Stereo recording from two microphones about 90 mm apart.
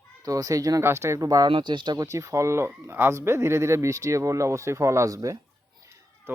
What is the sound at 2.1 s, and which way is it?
Speech, 35° right (ahead or behind).